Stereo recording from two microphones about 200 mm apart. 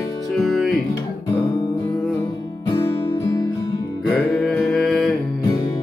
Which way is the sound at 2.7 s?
15° left (ahead or behind).